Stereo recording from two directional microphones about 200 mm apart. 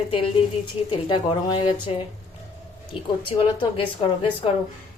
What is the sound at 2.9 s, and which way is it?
Speech, 25° left (ahead or behind).